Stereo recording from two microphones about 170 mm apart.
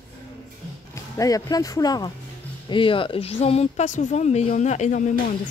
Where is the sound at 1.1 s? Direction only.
20° left (ahead or behind).